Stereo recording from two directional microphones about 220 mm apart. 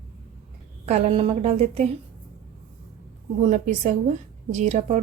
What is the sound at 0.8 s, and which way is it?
A woman's voice, 30° right (ahead or behind).